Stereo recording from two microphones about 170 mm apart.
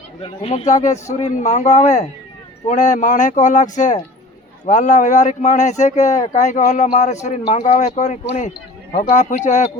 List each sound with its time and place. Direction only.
0.2 s speech: 35° left (ahead or behind)